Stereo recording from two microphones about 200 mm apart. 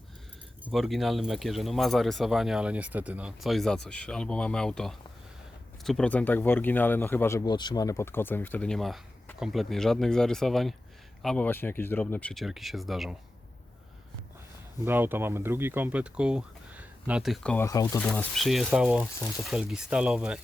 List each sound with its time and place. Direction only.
0.6 s speech: centre (ahead or behind)
14.8 s speech: 10° right (ahead or behind); by 17.7 s 5° left (ahead or behind)
17.7 s speech: 15° left (ahead or behind); by 20.4 s 5° right (ahead or behind)